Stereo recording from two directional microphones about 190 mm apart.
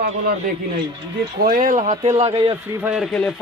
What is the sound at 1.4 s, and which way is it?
A man's voice, 45° right (ahead or behind).